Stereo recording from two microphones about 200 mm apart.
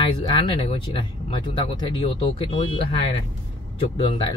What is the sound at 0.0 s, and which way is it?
Speech, 25° left (ahead or behind).